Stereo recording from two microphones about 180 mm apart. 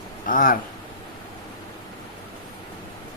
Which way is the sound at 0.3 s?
50° left (ahead or behind).